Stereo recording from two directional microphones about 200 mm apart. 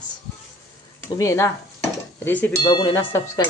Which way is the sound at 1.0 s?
15° left (ahead or behind).